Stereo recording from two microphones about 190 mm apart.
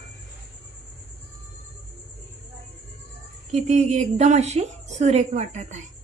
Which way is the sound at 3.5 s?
35° right (ahead or behind).